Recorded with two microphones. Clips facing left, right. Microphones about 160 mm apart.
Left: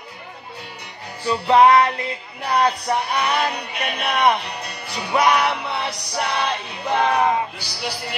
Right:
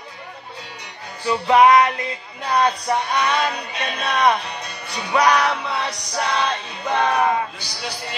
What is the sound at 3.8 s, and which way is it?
Music, 10° left (ahead or behind).